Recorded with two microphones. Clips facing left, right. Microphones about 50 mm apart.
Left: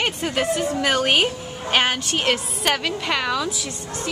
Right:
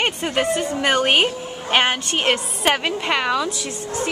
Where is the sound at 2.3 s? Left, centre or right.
Right.